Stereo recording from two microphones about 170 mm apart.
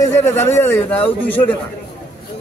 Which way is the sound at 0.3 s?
15° left (ahead or behind).